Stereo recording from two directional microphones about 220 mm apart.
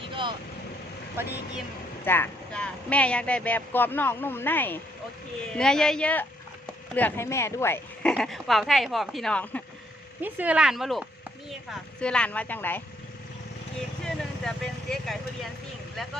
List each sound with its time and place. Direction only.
0.1 s vehicle: 20° right (ahead or behind)
2.0 s speech: 10° left (ahead or behind)
10.2 s speech: 10° right (ahead or behind); by 12.8 s 10° left (ahead or behind)
14.0 s vehicle: 5° left (ahead or behind)